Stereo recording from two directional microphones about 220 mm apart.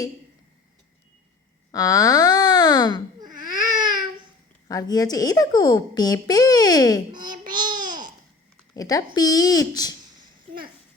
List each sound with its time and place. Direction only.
1.7 s a sound: 15° left (ahead or behind)
3.3 s baby cry: 20° right (ahead or behind)
4.7 s speech: 15° left (ahead or behind)
7.4 s babbling: 20° right (ahead or behind)
8.7 s speech: 15° left (ahead or behind)